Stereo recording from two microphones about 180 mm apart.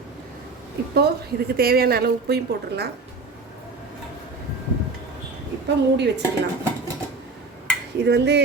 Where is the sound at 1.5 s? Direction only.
60° right (ahead or behind).